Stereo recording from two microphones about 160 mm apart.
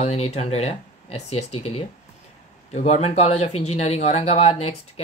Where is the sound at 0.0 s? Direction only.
40° left (ahead or behind).